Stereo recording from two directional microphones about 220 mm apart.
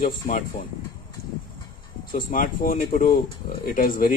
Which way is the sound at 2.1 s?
40° left (ahead or behind).